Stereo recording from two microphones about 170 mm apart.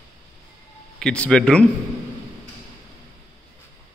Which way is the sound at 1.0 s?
5° left (ahead or behind).